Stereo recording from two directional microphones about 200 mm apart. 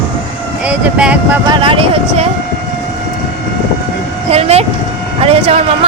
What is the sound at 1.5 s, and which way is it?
Speech, 25° right (ahead or behind).